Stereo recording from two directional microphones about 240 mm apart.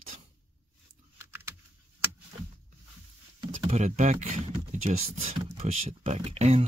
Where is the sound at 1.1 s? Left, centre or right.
Centre.